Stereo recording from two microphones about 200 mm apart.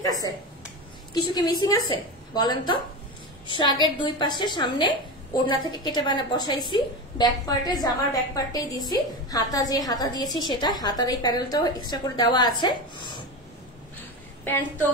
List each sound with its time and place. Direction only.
0.0 s a woman's voice: 20° left (ahead or behind)
1.3 s a woman's voice: 20° left (ahead or behind)
14.4 s a woman's voice: 10° left (ahead or behind)